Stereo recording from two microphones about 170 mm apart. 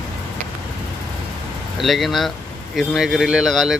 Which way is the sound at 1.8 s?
Centre (ahead or behind).